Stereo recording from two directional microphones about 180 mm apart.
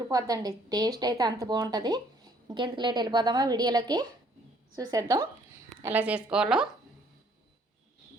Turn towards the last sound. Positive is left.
turn(degrees=-5)  # may be behind; listen again after turning